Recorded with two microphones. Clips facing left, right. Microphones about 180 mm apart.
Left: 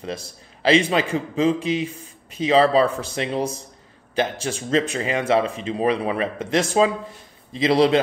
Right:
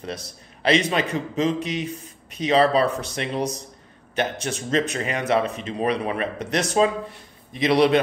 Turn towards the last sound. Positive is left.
turn(degrees=25)  # may be behind; listen again after turning